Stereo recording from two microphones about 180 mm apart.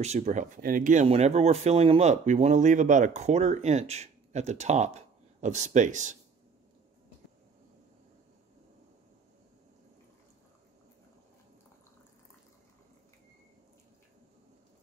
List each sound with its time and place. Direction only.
0.0 s speech: 40° right (ahead or behind)
1.0 s speech: 35° right (ahead or behind)